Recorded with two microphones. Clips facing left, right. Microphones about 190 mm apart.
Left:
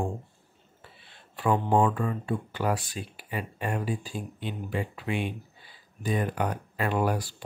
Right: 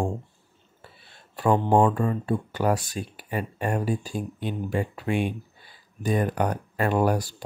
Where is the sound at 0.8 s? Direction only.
40° right (ahead or behind).